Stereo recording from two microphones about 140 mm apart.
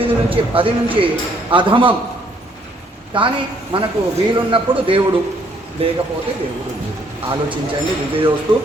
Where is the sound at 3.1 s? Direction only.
35° right (ahead or behind).